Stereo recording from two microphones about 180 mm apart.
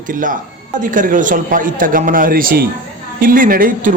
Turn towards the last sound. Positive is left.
turn(degrees=-50)  # may be behind; listen again after turning